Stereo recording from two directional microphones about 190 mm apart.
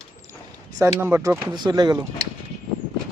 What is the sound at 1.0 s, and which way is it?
Speech, 15° right (ahead or behind).